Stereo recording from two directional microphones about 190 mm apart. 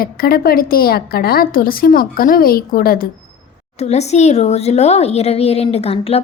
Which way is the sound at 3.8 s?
35° left (ahead or behind).